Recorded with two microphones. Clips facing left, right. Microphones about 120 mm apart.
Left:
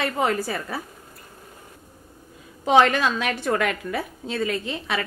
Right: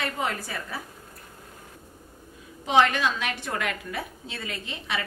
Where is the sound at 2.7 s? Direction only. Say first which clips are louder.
Left 4 dB; 50° left (ahead or behind).